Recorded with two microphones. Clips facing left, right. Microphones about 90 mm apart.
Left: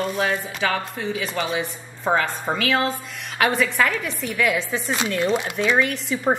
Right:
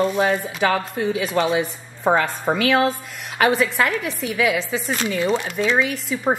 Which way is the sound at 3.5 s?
5° right (ahead or behind).